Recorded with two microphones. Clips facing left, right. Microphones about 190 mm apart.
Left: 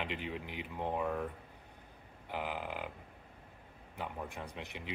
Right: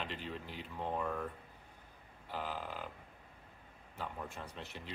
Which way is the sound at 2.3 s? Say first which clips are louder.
Left 2 dB; 15° left (ahead or behind).